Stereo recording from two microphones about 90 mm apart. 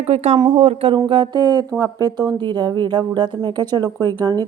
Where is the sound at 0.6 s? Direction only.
90° right.